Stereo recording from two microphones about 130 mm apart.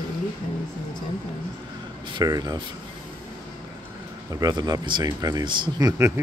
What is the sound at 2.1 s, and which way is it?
Speech, 30° right (ahead or behind).